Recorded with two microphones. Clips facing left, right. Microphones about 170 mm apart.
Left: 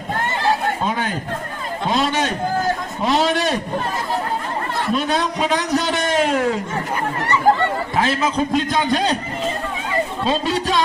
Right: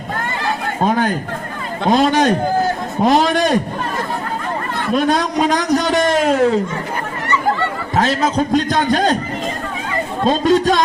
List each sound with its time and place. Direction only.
0.9 s a man's voice: 45° right (ahead or behind)
4.9 s a man's voice: 45° right (ahead or behind)
7.9 s a man's voice: 40° right (ahead or behind)
10.2 s a man's voice: 45° right (ahead or behind)